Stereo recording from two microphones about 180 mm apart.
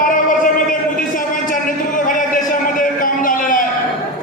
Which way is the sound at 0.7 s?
50° left (ahead or behind).